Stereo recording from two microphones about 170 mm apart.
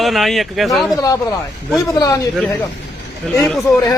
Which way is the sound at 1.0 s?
20° left (ahead or behind).